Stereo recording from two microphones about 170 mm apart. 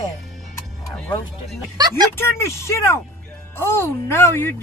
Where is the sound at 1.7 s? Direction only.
20° right (ahead or behind).